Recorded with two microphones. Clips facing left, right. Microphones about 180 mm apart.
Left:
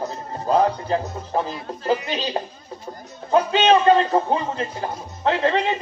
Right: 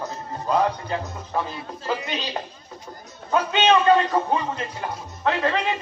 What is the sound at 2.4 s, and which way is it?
A man's voice, 30° left (ahead or behind).